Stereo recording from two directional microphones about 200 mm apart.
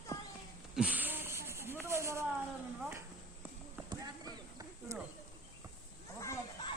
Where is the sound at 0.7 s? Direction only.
5° right (ahead or behind).